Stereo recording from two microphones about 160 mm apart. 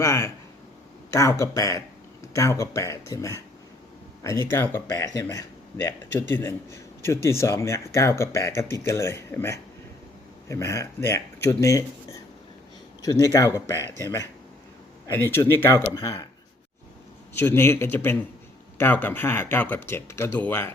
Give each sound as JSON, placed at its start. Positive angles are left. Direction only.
{"t": 0.0, "sound": "speech", "side_deg": 20}
{"t": 17.3, "sound": "speech", "side_deg": 15}